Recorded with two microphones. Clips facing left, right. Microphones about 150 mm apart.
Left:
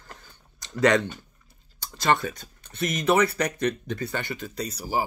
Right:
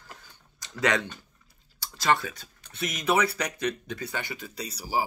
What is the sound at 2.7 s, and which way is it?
Speech, 55° left (ahead or behind).